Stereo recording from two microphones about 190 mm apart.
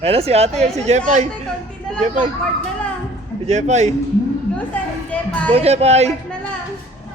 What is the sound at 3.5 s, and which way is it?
Speech, 35° right (ahead or behind).